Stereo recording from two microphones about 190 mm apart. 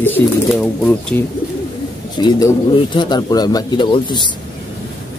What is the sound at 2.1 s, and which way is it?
A man's voice, 25° left (ahead or behind).